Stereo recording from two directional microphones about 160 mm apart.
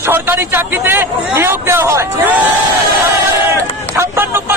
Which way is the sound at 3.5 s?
15° right (ahead or behind).